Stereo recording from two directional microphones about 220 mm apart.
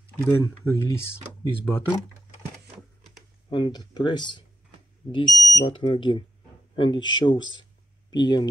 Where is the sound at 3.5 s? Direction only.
20° left (ahead or behind).